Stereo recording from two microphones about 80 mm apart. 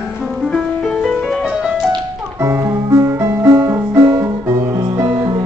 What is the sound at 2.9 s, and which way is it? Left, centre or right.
Music, right.